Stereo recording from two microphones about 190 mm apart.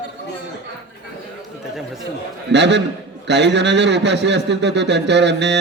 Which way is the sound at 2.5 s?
65° right (ahead or behind).